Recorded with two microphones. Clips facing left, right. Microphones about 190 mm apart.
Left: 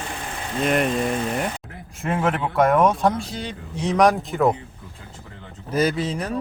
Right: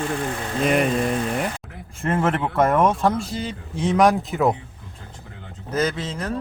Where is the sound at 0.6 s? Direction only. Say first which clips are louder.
Right 1 dB; centre (ahead or behind).